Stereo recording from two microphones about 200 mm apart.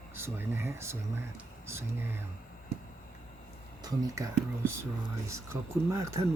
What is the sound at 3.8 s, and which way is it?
Speech, 15° right (ahead or behind).